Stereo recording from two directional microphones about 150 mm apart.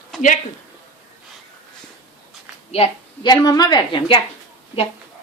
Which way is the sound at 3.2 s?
25° left (ahead or behind).